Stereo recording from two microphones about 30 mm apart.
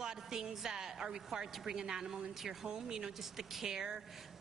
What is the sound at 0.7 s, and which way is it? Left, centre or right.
A woman's voice, centre.